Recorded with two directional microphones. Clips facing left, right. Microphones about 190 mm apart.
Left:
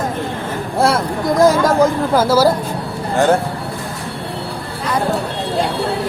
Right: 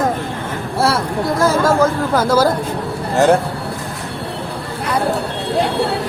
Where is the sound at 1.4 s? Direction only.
15° left (ahead or behind).